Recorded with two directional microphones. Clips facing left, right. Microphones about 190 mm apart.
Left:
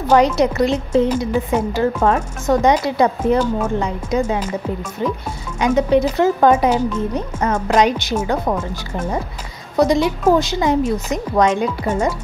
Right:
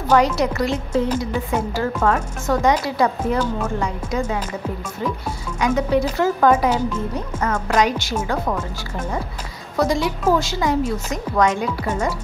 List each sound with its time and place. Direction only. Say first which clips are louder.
0.1 s a woman's voice: left 3 dB; 20° left (ahead or behind)
9.8 s a woman's voice: left 5 dB; 20° left (ahead or behind)